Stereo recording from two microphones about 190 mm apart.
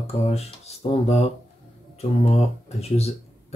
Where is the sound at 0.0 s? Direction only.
35° left (ahead or behind).